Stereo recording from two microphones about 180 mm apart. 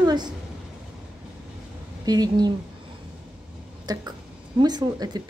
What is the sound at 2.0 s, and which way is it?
Speech, 20° right (ahead or behind).